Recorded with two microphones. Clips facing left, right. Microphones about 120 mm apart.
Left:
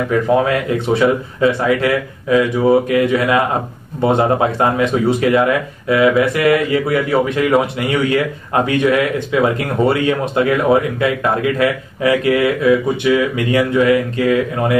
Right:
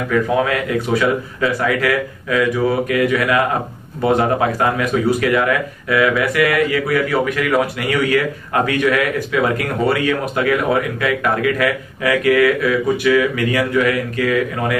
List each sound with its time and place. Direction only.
0.5 s speech: 25° left (ahead or behind)